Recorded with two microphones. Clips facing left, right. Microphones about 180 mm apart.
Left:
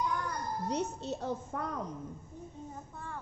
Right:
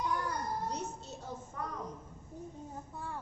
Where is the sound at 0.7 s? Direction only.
70° left (ahead or behind).